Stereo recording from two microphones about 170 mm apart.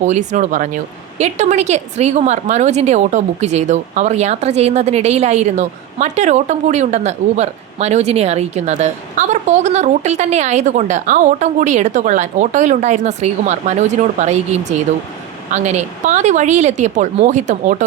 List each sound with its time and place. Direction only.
0.0 s a woman's voice: 45° right (ahead or behind)